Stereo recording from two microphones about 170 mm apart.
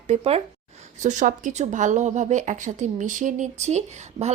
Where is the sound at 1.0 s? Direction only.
45° right (ahead or behind).